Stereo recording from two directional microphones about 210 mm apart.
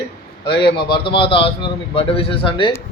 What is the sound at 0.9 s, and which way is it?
A man's voice, 25° left (ahead or behind).